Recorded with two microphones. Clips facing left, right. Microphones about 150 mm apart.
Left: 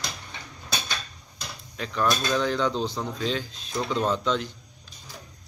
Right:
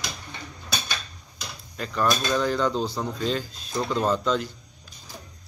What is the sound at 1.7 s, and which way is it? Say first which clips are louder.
Speech: right 1 dB; centre (ahead or behind).